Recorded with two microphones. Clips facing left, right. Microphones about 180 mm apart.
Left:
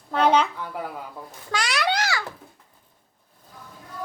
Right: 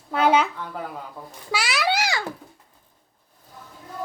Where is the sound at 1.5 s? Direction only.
5° right (ahead or behind).